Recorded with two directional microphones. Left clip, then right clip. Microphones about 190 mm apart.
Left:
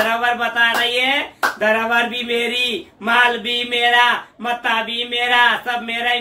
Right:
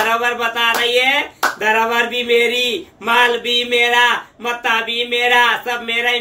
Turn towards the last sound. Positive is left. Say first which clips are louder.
# right 2 dB
turn(degrees=10)  # may be behind; listen again after turning